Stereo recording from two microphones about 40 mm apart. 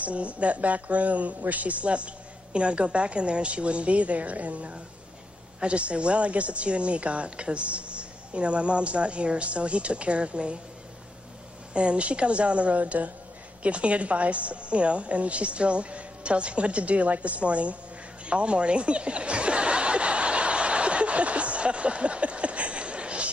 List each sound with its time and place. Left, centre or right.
0.0 s a woman's voice: right
11.7 s a woman's voice: right
18.2 s a sound: right